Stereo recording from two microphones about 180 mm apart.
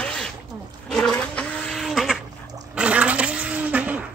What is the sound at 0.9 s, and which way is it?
Toilet flush, 5° left (ahead or behind).